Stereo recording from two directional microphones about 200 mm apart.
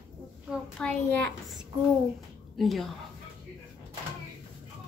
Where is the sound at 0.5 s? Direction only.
5° left (ahead or behind).